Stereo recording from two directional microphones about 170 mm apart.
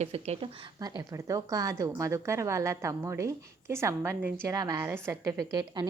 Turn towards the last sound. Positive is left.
turn(degrees=-25)  # may be behind; listen again after turning